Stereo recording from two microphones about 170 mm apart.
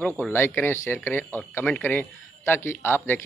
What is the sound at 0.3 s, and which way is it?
Speech, 15° left (ahead or behind).